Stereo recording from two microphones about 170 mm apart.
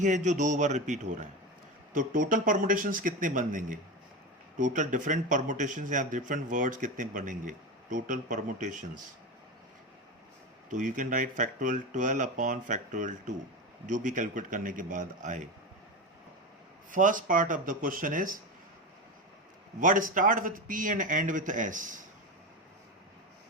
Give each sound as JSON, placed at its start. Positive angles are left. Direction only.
{"t": 0.0, "sound": "a man's voice", "side_deg": -45}
{"t": 10.7, "sound": "a man's voice", "side_deg": -50}
{"t": 16.9, "sound": "a man's voice", "side_deg": -50}
{"t": 19.8, "sound": "a man's voice", "side_deg": -50}